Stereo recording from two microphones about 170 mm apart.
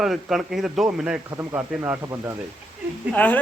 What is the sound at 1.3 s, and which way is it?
Speech, 15° right (ahead or behind).